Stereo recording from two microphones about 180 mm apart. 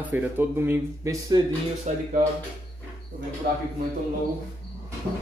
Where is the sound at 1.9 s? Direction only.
40° right (ahead or behind).